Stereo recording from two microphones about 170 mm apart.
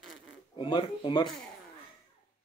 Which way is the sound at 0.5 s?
30° left (ahead or behind).